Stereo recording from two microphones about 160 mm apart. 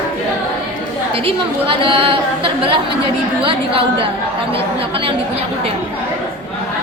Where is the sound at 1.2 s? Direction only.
35° right (ahead or behind).